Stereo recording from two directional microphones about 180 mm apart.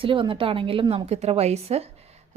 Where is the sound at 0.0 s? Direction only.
30° right (ahead or behind).